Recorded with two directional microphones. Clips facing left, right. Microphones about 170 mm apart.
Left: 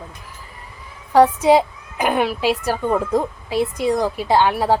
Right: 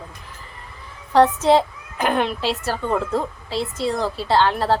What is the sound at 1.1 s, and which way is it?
A woman's voice, 10° left (ahead or behind).